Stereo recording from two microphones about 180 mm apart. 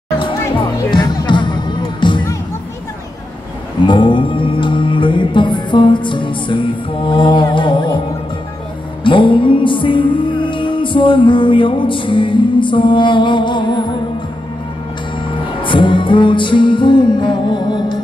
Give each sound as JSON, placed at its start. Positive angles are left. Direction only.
{"t": 0.7, "sound": "music", "side_deg": 25}
{"t": 3.8, "sound": "music", "side_deg": 25}
{"t": 9.0, "sound": "music", "side_deg": 30}
{"t": 15.6, "sound": "music", "side_deg": 25}